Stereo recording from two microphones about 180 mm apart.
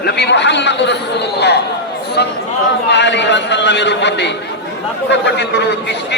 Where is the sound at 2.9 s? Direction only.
75° left (ahead or behind).